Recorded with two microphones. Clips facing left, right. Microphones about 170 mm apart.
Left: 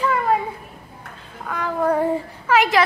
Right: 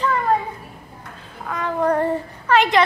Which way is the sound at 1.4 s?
Centre (ahead or behind).